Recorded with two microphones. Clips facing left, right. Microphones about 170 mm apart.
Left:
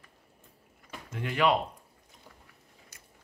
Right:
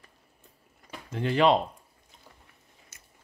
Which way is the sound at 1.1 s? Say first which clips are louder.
Right 4 dB; 30° right (ahead or behind).